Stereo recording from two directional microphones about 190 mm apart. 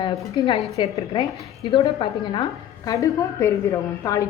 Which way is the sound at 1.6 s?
30° left (ahead or behind).